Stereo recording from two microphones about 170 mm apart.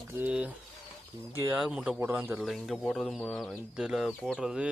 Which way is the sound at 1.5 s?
5° right (ahead or behind).